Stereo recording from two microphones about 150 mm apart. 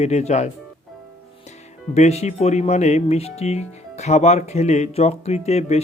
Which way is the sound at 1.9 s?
45° left (ahead or behind).